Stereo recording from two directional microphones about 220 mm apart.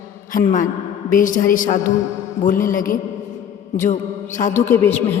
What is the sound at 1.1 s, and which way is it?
A woman's voice, 35° left (ahead or behind).